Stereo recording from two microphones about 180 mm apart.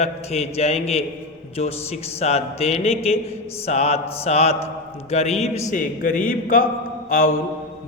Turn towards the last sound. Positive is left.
turn(degrees=50)  # may be behind; listen again after turning